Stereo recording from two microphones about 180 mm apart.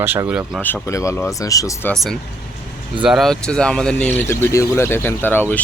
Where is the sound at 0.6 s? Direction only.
10° left (ahead or behind).